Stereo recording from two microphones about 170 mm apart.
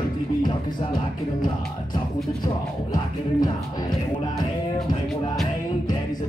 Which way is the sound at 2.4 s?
25° left (ahead or behind).